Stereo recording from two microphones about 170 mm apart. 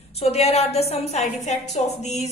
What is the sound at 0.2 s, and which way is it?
A woman's voice, 40° left (ahead or behind).